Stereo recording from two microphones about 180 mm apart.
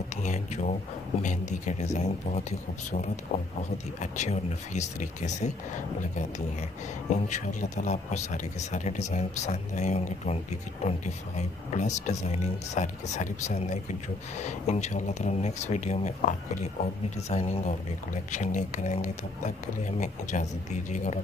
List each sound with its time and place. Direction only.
0.2 s a sound: 40° left (ahead or behind)
1.2 s speech: 40° left (ahead or behind)
3.7 s speech: 40° left (ahead or behind)
7.1 s speech: 40° left (ahead or behind)